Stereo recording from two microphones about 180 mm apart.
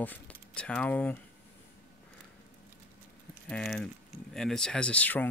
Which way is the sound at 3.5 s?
Centre (ahead or behind).